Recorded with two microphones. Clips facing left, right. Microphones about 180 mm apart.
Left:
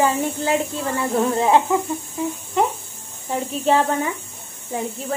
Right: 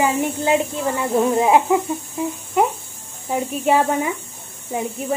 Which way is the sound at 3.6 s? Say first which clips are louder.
Right 1 dB; 10° right (ahead or behind).